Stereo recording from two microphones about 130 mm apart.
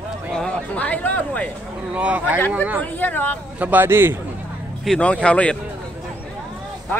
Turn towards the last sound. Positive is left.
turn(degrees=10)  # may be behind; listen again after turning